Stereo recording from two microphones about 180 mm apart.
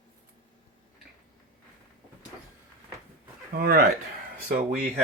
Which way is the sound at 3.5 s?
55° right (ahead or behind).